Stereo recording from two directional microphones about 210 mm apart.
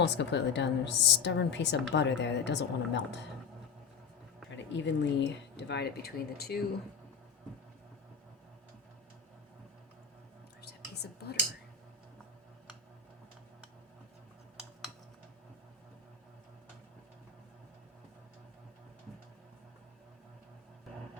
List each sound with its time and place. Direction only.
0.0 s a woman's voice: 55° left (ahead or behind)
4.5 s a woman's voice: 60° left (ahead or behind)
10.6 s whispering: 50° left (ahead or behind)